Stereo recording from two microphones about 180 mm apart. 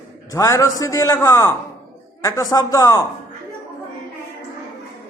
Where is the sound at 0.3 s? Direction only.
15° left (ahead or behind).